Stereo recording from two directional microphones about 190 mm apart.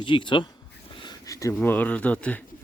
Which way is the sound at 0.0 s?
25° left (ahead or behind).